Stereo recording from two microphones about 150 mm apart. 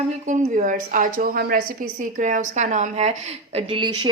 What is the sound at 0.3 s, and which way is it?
A woman's voice, 60° right (ahead or behind).